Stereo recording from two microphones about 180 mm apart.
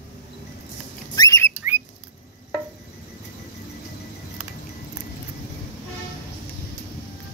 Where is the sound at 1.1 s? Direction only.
20° left (ahead or behind).